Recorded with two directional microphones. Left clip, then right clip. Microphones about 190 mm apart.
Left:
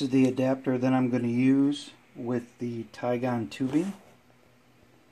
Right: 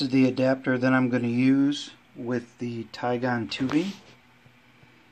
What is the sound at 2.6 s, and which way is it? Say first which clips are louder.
Speech: right 1 dB; 40° right (ahead or behind).